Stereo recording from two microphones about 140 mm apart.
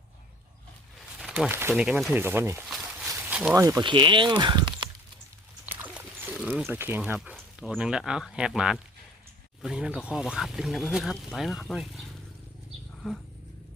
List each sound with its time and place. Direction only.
1.3 s speech: 15° right (ahead or behind)
3.2 s a sound: 10° right (ahead or behind)
3.5 s speech: 20° right (ahead or behind)
3.8 s speech: 35° right (ahead or behind)
5.8 s pig: 10° right (ahead or behind)
6.7 s speech: 15° right (ahead or behind)
7.3 s a sound: 5° left (ahead or behind)
7.8 s speech: 5° right (ahead or behind)
13.0 s speech: centre (ahead or behind)